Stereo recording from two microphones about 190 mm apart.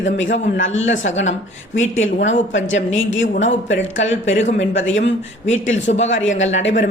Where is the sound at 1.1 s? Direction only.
35° left (ahead or behind).